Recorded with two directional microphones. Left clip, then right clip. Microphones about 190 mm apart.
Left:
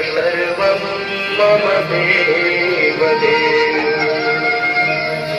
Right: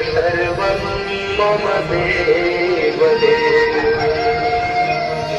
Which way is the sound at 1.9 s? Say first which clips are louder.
Left 2 dB; 35° right (ahead or behind).